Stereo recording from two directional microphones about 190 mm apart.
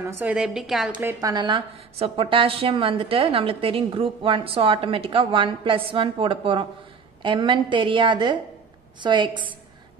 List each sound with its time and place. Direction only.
0.1 s a woman's voice: 5° right (ahead or behind)
1.2 s a woman's voice: 20° right (ahead or behind)